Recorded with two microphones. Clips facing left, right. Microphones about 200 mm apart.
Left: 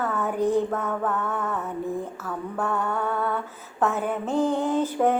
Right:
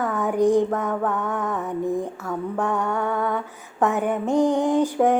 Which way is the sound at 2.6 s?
15° right (ahead or behind).